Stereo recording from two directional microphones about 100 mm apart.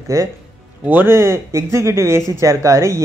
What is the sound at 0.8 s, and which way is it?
Speech, 20° right (ahead or behind).